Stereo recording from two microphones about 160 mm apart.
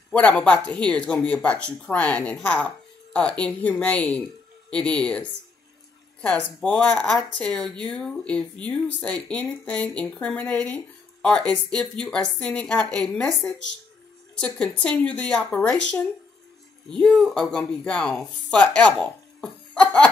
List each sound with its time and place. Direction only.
0.1 s speech: 10° left (ahead or behind)
6.2 s speech: 5° left (ahead or behind)